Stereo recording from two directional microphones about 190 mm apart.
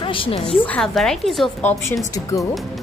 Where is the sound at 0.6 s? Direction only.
5° left (ahead or behind).